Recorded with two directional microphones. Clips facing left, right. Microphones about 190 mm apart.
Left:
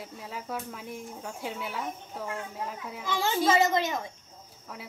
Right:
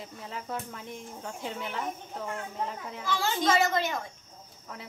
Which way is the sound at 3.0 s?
20° left (ahead or behind).